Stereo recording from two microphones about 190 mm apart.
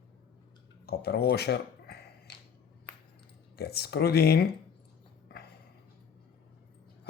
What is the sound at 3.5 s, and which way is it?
Speech, 60° left (ahead or behind).